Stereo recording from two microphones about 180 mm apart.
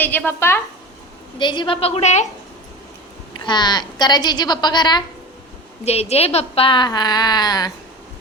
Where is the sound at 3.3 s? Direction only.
25° left (ahead or behind).